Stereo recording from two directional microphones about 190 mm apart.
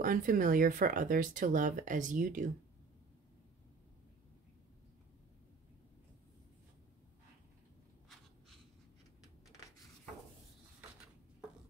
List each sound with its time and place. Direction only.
0.0 s speech: 45° right (ahead or behind)